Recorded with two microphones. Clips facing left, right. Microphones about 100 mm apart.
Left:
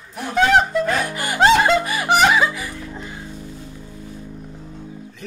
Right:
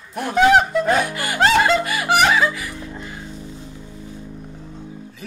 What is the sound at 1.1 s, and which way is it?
Music, 20° left (ahead or behind).